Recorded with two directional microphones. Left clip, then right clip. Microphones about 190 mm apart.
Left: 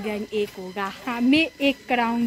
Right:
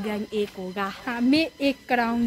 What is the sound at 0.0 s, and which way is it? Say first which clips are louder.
Speech: left 1 dB; 20° right (ahead or behind).